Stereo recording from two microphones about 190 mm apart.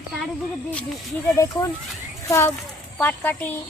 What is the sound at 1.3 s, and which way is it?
A child's voice, 15° left (ahead or behind).